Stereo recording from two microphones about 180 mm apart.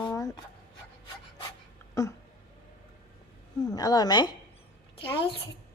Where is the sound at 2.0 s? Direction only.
15° left (ahead or behind).